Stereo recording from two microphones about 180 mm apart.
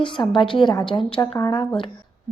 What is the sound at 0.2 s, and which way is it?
Speech, 25° left (ahead or behind).